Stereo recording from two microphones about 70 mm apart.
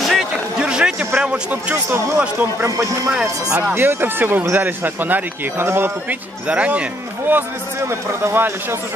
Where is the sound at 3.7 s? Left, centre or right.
Right.